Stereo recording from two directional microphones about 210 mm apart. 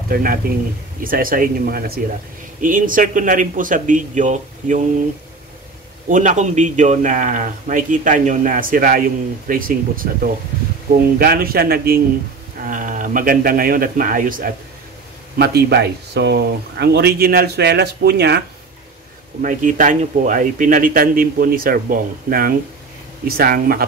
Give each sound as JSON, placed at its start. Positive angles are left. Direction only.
{"t": 0.1, "sound": "a man's voice", "side_deg": -45}
{"t": 6.0, "sound": "a man's voice", "side_deg": -35}
{"t": 19.4, "sound": "a man's voice", "side_deg": -40}